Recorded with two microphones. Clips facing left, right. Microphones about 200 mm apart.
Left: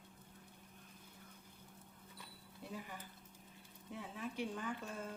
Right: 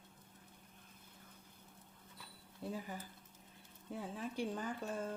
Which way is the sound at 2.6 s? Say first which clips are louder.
Right 6 dB; 35° right (ahead or behind).